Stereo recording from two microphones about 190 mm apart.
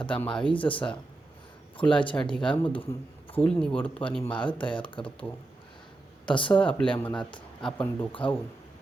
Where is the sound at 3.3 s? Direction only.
5° left (ahead or behind).